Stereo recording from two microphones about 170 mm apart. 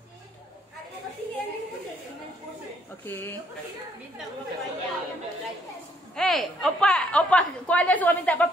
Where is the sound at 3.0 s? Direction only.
10° left (ahead or behind).